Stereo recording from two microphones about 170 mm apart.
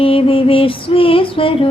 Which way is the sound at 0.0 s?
35° left (ahead or behind).